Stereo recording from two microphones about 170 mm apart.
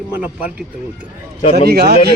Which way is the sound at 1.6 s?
70° right (ahead or behind).